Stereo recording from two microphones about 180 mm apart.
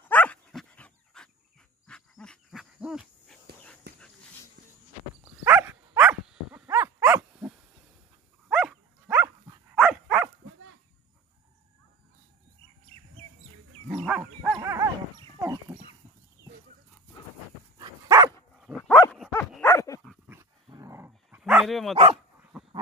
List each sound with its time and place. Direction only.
0.1 s dog: 10° left (ahead or behind)
3.9 s dog: 65° right (ahead or behind)
5.2 s dog: 10° right (ahead or behind)
9.8 s dog: centre (ahead or behind)
12.9 s chirp: 35° right (ahead or behind)
13.8 s dog: centre (ahead or behind)
14.5 s dog: 20° right (ahead or behind)
15.4 s livestock: 20° right (ahead or behind)
17.7 s dog: 20° right (ahead or behind)
18.7 s dog: 10° right (ahead or behind)
19.6 s dog: 15° left (ahead or behind)
20.6 s dog: 20° right (ahead or behind); by 22.7 s centre (ahead or behind)